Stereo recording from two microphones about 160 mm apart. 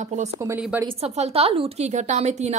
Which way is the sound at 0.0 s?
45° right (ahead or behind).